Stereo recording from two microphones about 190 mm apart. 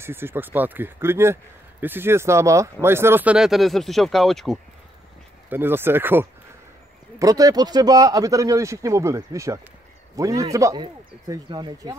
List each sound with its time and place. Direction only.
0.0 s speech: 10° right (ahead or behind)
5.5 s speech: 10° right (ahead or behind)